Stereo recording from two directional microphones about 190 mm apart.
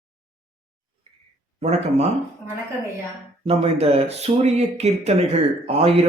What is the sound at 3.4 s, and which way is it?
Speech, 30° right (ahead or behind).